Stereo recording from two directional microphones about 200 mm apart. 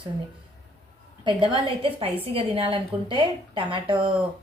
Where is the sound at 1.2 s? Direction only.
25° right (ahead or behind).